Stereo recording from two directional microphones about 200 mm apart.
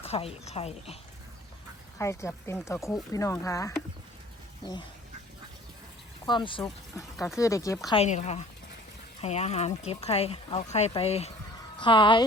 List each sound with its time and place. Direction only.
0.0 s speech: 30° left (ahead or behind)
2.0 s speech: 15° left (ahead or behind)
6.2 s speech: 25° left (ahead or behind)
7.9 s speech: 35° left (ahead or behind)